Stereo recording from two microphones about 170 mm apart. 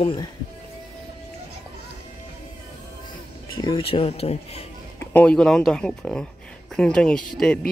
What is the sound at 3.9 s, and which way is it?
Speech, 35° left (ahead or behind).